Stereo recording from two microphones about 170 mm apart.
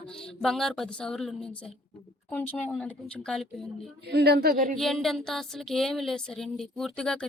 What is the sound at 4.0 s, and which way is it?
Speech, 75° right (ahead or behind).